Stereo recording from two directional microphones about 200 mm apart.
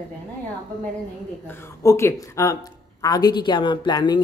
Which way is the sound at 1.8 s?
15° left (ahead or behind).